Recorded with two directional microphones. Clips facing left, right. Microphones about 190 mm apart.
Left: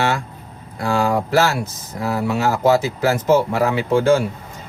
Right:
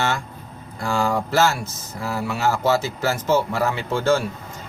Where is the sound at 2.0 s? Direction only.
15° left (ahead or behind).